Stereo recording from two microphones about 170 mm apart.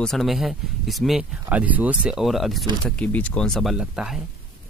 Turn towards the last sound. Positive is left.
turn(degrees=-5)  # may be behind; listen again after turning